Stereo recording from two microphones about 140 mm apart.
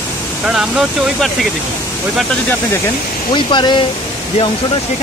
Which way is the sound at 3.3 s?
35° left (ahead or behind).